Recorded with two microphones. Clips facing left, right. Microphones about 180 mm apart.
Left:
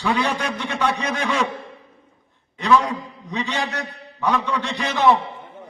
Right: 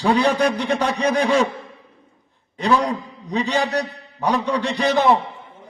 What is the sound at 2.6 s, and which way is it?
A man's voice, 35° right (ahead or behind).